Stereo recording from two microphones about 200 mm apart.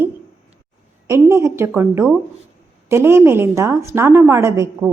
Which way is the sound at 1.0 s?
15° right (ahead or behind).